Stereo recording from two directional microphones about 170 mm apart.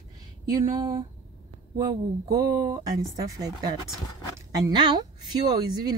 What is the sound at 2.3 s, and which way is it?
Speech, 20° right (ahead or behind).